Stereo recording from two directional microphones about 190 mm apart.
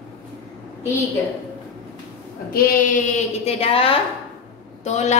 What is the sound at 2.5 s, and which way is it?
A woman's voice, 50° left (ahead or behind).